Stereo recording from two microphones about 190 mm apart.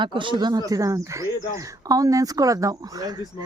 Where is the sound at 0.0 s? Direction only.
25° right (ahead or behind).